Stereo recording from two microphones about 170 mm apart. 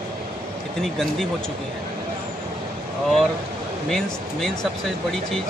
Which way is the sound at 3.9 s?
Centre (ahead or behind).